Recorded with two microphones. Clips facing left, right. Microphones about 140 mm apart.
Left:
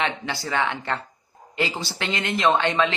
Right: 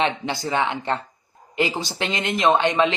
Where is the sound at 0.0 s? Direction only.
20° right (ahead or behind).